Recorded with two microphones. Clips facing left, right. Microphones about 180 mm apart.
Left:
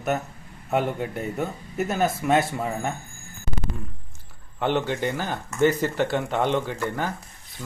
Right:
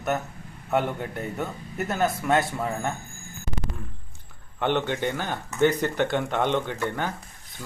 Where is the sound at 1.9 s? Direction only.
15° left (ahead or behind).